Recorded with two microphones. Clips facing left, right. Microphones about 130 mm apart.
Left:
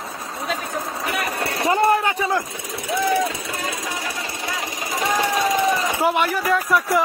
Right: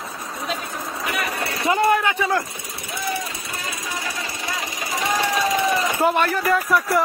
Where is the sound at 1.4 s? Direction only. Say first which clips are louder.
Left 1 dB; 35° left (ahead or behind).